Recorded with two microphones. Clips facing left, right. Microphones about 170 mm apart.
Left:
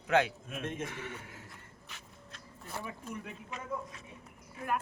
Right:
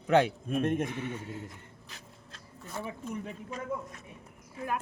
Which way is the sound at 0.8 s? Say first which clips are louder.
Right 7 dB; 20° right (ahead or behind).